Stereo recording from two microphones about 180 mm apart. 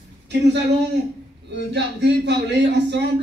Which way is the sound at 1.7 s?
70° right (ahead or behind).